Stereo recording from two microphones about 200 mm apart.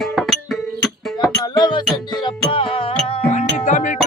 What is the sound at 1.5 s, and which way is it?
Music, 20° left (ahead or behind).